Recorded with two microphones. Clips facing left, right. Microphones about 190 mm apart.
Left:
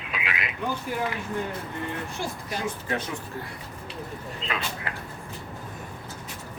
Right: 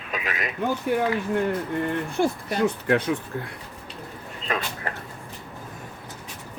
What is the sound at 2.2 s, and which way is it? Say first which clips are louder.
Speech: right 11 dB; 55° right (ahead or behind).